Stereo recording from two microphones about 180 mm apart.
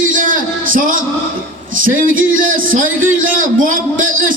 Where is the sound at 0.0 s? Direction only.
45° right (ahead or behind).